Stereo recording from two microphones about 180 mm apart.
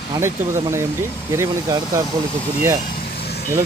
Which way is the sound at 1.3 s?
15° right (ahead or behind).